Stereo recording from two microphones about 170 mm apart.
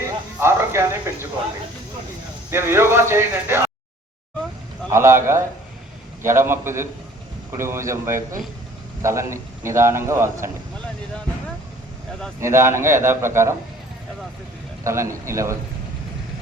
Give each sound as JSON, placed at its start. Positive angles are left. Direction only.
{"t": 0.3, "sound": "speech", "side_deg": -15}
{"t": 2.5, "sound": "a man's voice", "side_deg": -15}
{"t": 4.9, "sound": "a man's voice", "side_deg": -15}
{"t": 12.4, "sound": "a man's voice", "side_deg": -15}
{"t": 14.8, "sound": "a man's voice", "side_deg": -15}